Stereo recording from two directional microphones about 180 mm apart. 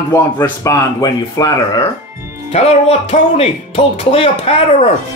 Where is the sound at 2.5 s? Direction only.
35° left (ahead or behind).